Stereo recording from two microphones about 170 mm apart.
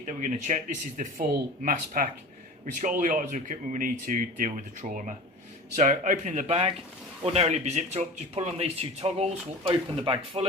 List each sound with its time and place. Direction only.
0.0 s speech: 45° right (ahead or behind)